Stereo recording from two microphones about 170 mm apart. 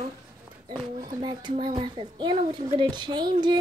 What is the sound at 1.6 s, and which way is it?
Speech, 30° right (ahead or behind).